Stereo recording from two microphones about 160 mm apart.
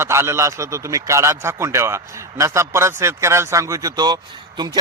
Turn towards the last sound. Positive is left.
turn(degrees=-25)  # may be behind; listen again after turning